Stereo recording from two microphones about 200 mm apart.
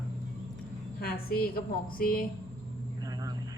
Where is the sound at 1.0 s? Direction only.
50° left (ahead or behind).